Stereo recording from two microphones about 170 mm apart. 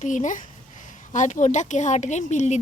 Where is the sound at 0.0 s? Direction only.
45° left (ahead or behind).